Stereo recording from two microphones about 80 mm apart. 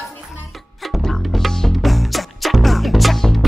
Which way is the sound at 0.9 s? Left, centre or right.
Centre.